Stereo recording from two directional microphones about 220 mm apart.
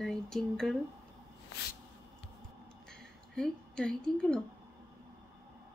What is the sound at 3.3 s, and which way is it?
A woman's voice, 5° left (ahead or behind).